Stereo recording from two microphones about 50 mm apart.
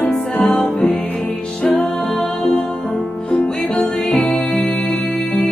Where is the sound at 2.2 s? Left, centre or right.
Left.